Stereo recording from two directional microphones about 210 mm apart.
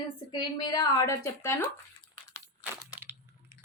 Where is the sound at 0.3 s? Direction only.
20° left (ahead or behind).